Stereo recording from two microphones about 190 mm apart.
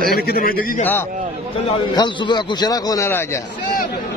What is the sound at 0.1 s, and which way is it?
Speech, 50° left (ahead or behind).